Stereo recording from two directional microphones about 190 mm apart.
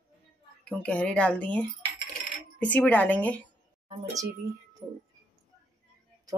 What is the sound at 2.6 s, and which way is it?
Speech, 5° left (ahead or behind).